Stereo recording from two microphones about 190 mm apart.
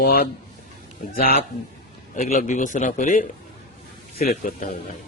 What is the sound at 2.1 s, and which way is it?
A man's voice, 45° left (ahead or behind).